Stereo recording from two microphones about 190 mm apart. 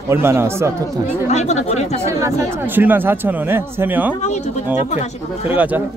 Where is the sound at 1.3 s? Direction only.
35° left (ahead or behind).